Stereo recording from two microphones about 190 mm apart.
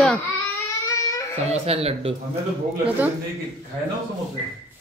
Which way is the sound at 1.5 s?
30° right (ahead or behind).